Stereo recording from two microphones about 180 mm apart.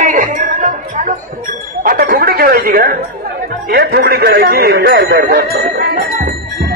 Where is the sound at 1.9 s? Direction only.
55° right (ahead or behind).